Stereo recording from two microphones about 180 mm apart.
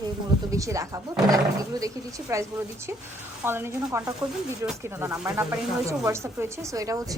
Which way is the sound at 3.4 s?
15° right (ahead or behind).